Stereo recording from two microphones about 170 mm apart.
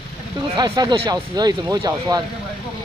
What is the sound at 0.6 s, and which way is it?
Speech, 25° right (ahead or behind).